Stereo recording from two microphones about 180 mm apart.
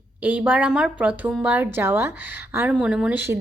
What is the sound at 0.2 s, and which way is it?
A woman's voice, 10° right (ahead or behind).